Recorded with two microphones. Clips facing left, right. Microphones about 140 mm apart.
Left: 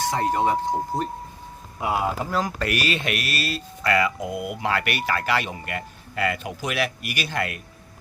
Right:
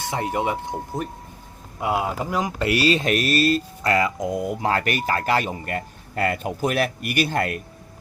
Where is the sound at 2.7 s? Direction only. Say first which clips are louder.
Right 9 dB; 30° right (ahead or behind).